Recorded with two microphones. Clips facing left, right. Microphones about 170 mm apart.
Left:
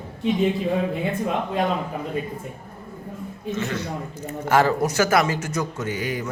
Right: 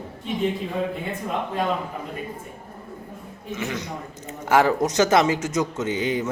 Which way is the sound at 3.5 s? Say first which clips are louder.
Left 1 dB; 15° right (ahead or behind).